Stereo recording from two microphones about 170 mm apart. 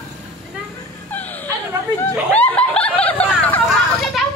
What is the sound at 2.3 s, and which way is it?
Snicker, 10° left (ahead or behind).